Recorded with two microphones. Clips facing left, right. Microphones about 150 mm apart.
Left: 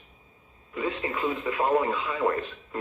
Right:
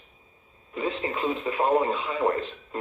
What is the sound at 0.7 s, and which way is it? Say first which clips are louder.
Speech: right 1 dB; 25° right (ahead or behind).